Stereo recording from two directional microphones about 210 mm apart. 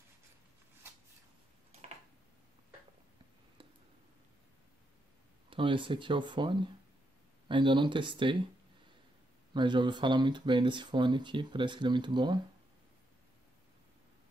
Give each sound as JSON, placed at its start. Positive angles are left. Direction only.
{"t": 5.5, "sound": "speech", "side_deg": -25}
{"t": 9.5, "sound": "speech", "side_deg": -20}